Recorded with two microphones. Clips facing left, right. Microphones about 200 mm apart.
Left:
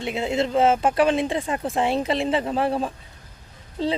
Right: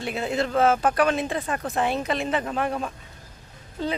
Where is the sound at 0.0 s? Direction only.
25° left (ahead or behind).